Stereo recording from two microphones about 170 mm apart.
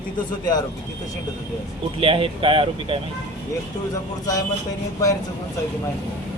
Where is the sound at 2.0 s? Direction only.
30° right (ahead or behind).